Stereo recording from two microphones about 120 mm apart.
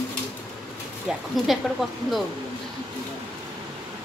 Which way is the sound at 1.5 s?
Centre (ahead or behind).